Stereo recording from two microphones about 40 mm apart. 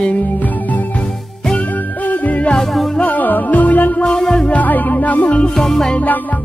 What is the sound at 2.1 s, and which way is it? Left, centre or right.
Music, left.